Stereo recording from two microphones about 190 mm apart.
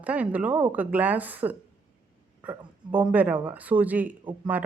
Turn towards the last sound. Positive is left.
turn(degrees=-10)  # may be behind; listen again after turning